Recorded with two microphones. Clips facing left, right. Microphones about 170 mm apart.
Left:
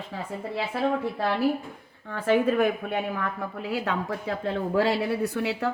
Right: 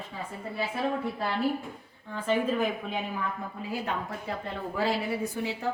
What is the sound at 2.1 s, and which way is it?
A woman's voice, 65° left (ahead or behind).